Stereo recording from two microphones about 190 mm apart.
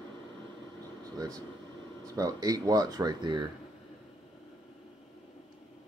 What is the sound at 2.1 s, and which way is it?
Speech, 20° right (ahead or behind).